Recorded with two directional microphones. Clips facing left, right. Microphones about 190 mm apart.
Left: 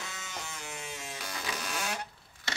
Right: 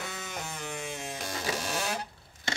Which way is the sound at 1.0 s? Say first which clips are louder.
Right 5 dB; 45° right (ahead or behind).